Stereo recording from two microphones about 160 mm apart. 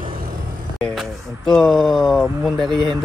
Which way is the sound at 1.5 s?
Centre (ahead or behind).